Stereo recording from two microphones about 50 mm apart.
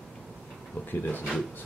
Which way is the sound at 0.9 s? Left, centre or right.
Left.